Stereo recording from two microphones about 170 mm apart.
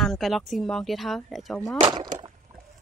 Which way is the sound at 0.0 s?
Centre (ahead or behind).